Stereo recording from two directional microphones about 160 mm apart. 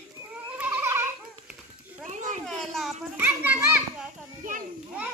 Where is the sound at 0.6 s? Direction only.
15° right (ahead or behind).